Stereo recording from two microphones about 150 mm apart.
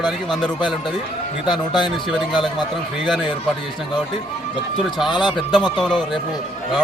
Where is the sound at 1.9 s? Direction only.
Centre (ahead or behind).